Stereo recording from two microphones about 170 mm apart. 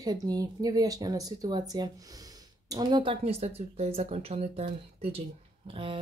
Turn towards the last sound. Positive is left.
turn(degrees=-30)  # may be behind; listen again after turning